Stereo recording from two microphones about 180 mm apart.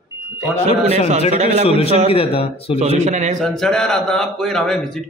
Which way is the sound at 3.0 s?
40° right (ahead or behind).